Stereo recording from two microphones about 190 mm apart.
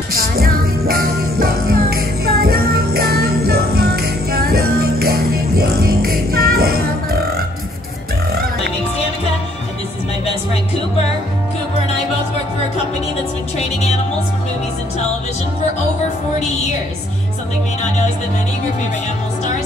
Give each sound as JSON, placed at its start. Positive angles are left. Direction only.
{"t": 0.1, "sound": "music", "side_deg": -50}